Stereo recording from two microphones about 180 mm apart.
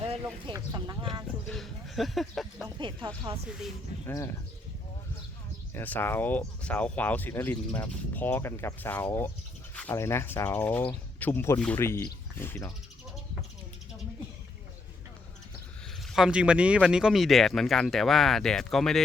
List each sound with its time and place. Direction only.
0.4 s speech: 25° right (ahead or behind)
1.5 s speech: centre (ahead or behind)
2.6 s speech: 25° right (ahead or behind)
4.0 s speech: 15° left (ahead or behind)
5.7 s speech: 10° left (ahead or behind)
16.1 s speech: 5° right (ahead or behind)